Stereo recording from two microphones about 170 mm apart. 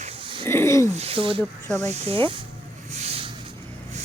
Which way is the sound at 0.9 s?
35° right (ahead or behind).